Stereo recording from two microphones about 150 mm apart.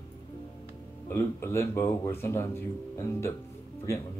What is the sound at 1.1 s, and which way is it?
Speech, 15° left (ahead or behind).